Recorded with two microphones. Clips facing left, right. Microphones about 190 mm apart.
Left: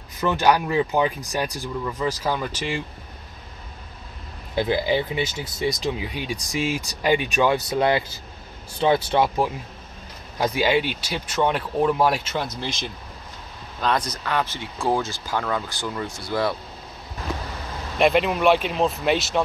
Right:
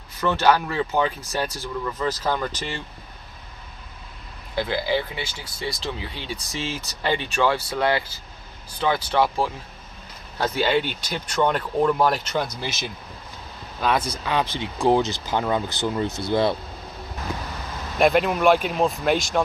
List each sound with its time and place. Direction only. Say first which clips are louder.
0.2 s speech: even; 15° left (ahead or behind)
4.6 s speech: left 2 dB; 20° left (ahead or behind); by 16.5 s 25° right (ahead or behind)
17.9 s speech: even; centre (ahead or behind)